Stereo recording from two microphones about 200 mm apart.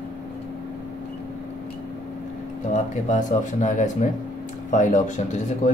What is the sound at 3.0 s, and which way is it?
Speech, 40° left (ahead or behind).